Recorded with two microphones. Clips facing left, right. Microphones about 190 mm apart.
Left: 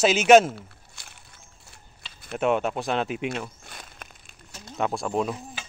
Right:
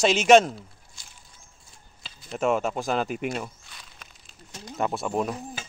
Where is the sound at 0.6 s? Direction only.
65° left (ahead or behind).